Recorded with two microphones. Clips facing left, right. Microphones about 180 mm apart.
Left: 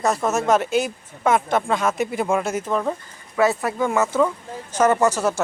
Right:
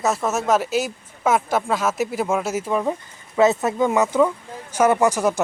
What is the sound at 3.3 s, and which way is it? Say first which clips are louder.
Speech: right 3 dB; 20° right (ahead or behind).